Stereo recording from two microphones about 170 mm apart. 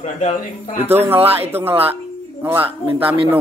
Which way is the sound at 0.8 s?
10° right (ahead or behind).